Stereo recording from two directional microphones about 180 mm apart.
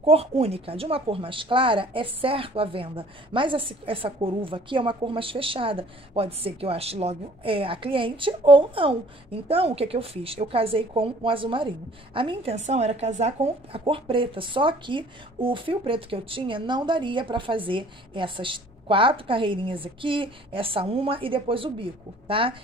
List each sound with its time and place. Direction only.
0.0 s a woman's voice: 35° right (ahead or behind)